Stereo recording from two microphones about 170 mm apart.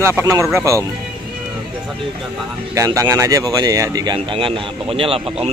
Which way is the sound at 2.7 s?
20° right (ahead or behind).